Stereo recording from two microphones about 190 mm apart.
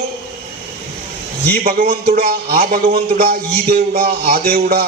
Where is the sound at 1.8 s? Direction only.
55° right (ahead or behind).